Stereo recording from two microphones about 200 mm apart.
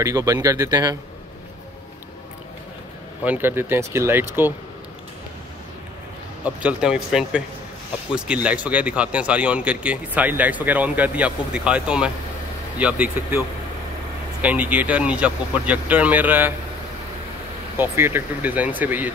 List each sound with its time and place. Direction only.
0.0 s a man's voice: 15° right (ahead or behind)
3.3 s a man's voice: 10° right (ahead or behind)
6.4 s a man's voice: 5° right (ahead or behind)
14.4 s a man's voice: 5° right (ahead or behind)
17.7 s a man's voice: 10° right (ahead or behind)